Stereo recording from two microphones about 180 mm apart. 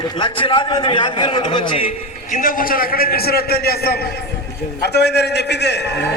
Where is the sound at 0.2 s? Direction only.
30° left (ahead or behind).